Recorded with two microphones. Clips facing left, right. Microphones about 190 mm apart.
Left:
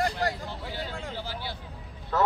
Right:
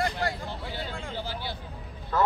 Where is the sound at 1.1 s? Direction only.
25° right (ahead or behind).